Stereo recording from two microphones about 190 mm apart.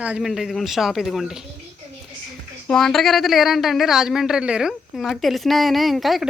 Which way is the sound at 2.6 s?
5° left (ahead or behind).